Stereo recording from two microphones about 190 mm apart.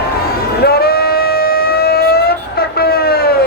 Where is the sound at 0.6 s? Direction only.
55° left (ahead or behind).